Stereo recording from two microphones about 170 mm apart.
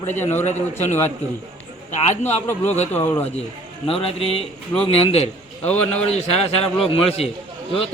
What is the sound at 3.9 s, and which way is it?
A man's voice, 35° left (ahead or behind).